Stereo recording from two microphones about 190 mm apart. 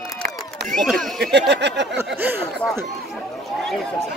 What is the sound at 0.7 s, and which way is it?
Speech, centre (ahead or behind).